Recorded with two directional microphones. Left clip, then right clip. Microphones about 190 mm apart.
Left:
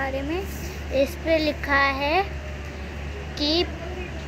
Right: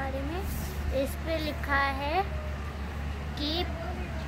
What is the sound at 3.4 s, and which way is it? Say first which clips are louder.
Speech: left 9 dB; 15° left (ahead or behind).